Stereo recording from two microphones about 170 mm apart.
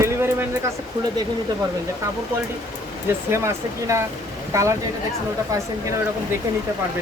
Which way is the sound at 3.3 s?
15° right (ahead or behind).